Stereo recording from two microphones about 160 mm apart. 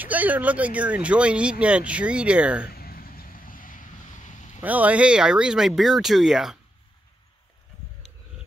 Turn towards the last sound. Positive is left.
turn(degrees=-5)  # may be behind; listen again after turning